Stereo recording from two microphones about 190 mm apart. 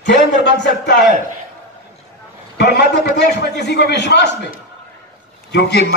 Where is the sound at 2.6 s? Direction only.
65° left (ahead or behind).